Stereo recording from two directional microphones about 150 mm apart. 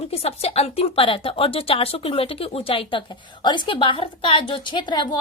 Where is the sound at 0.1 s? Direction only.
40° left (ahead or behind).